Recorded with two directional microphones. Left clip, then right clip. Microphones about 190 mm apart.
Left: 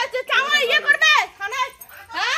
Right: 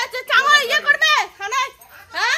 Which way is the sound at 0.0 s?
25° right (ahead or behind).